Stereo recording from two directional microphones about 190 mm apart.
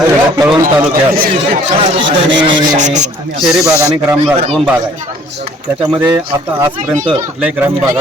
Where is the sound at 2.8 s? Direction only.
40° right (ahead or behind).